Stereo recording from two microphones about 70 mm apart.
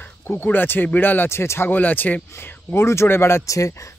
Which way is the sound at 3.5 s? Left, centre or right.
Left.